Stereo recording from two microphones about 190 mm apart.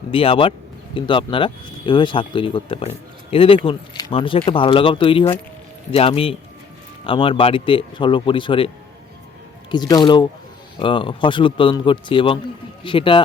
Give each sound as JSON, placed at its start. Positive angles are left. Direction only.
{"t": 0.1, "sound": "speech", "side_deg": 30}
{"t": 9.7, "sound": "speech", "side_deg": 20}